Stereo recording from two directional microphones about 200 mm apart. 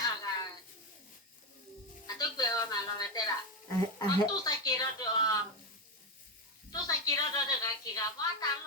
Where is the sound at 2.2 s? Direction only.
20° left (ahead or behind).